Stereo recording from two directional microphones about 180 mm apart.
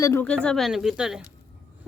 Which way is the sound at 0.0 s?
10° left (ahead or behind).